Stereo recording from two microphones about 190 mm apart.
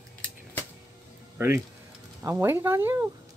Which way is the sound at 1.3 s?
10° right (ahead or behind).